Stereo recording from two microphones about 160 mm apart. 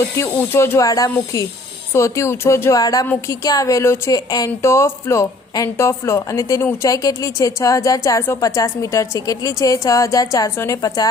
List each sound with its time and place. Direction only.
0.2 s a woman's voice: 15° left (ahead or behind)